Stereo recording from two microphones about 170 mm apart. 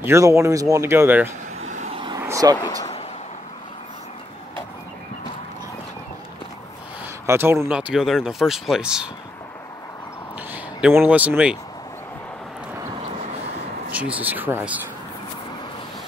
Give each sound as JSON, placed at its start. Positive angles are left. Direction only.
{"t": 0.0, "sound": "speech", "side_deg": -15}
{"t": 1.6, "sound": "vehicle", "side_deg": -40}
{"t": 2.1, "sound": "vehicle", "side_deg": -20}
{"t": 7.2, "sound": "speech", "side_deg": -15}
{"t": 10.5, "sound": "speech", "side_deg": -10}
{"t": 13.9, "sound": "speech", "side_deg": -10}